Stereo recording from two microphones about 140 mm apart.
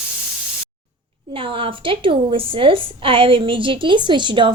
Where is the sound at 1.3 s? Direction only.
40° right (ahead or behind).